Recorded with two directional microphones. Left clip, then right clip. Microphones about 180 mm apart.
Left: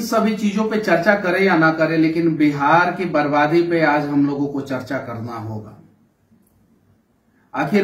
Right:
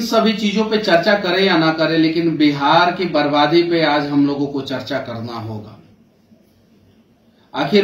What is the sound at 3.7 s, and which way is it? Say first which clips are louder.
A man's voice: right 1 dB; 25° left (ahead or behind).